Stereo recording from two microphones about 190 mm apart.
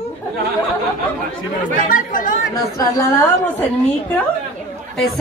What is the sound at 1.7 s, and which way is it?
Speech, 45° left (ahead or behind).